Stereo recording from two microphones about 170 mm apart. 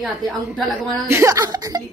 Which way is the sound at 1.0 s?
15° right (ahead or behind).